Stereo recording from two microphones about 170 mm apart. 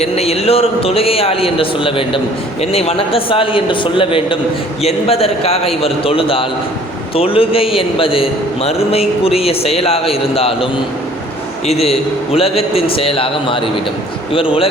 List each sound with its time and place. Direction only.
0.0 s a man's voice: 35° left (ahead or behind)